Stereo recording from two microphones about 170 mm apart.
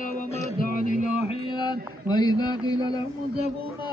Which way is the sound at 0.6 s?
55° left (ahead or behind).